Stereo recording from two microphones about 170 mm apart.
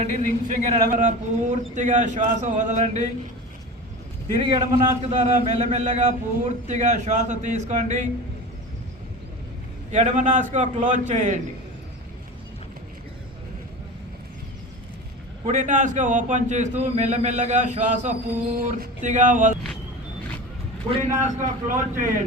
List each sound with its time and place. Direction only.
0.3 s a man's voice: 50° right (ahead or behind)
4.4 s a man's voice: 30° right (ahead or behind); by 8.1 s 45° right (ahead or behind)
9.9 s a man's voice: 45° right (ahead or behind)
15.4 s a man's voice: 45° right (ahead or behind)
20.9 s a man's voice: 45° right (ahead or behind)